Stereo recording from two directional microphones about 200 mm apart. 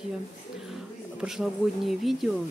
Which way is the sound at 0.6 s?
Centre (ahead or behind).